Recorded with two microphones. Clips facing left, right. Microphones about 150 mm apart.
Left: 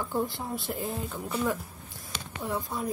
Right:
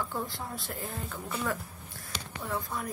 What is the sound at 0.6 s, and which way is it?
Speech, 5° left (ahead or behind).